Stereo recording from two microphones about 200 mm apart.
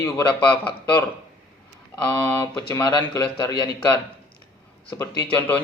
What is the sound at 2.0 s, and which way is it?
A man's voice, 10° left (ahead or behind).